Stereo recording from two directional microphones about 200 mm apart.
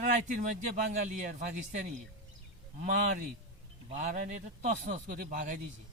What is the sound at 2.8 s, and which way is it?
A man's voice, 40° right (ahead or behind).